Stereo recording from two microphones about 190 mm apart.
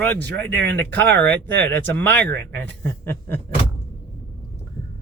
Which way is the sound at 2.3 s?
60° right (ahead or behind).